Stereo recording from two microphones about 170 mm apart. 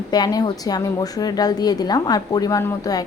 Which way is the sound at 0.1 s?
25° left (ahead or behind).